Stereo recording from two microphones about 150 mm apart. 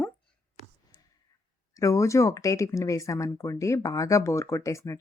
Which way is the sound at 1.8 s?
20° left (ahead or behind).